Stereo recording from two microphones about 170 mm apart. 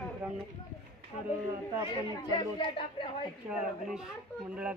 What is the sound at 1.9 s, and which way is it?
Speech, 25° left (ahead or behind).